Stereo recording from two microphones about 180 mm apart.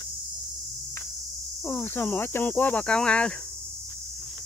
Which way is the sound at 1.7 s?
10° left (ahead or behind).